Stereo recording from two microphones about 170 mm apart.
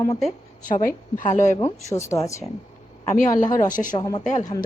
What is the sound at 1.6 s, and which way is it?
A woman's voice, 15° left (ahead or behind).